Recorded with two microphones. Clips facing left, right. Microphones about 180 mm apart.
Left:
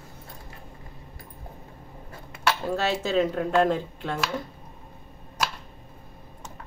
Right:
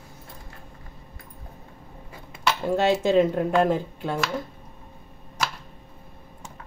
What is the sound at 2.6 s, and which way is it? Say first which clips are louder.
Speech: right 5 dB; 15° right (ahead or behind).